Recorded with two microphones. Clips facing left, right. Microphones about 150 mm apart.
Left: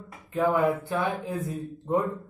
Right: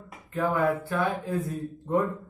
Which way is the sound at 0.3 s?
15° left (ahead or behind).